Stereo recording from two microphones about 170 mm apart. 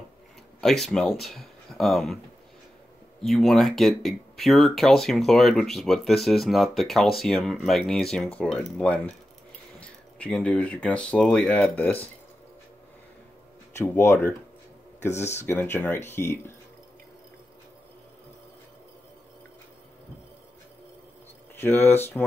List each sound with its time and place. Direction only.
0.6 s speech: centre (ahead or behind)
3.2 s speech: centre (ahead or behind)
13.7 s speech: 15° left (ahead or behind)
21.5 s speech: 10° left (ahead or behind)